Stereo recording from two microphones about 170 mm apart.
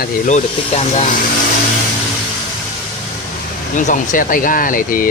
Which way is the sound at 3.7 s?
45° left (ahead or behind).